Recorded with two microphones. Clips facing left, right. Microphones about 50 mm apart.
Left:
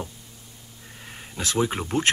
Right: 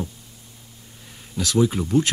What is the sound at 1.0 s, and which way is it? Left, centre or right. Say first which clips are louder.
Speech: right 3 dB; left.